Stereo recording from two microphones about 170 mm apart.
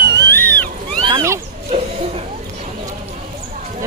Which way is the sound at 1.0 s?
25° right (ahead or behind).